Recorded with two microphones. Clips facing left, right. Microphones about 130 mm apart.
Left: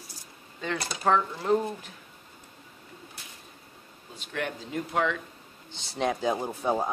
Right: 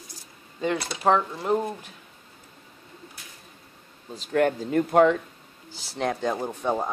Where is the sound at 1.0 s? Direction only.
20° right (ahead or behind).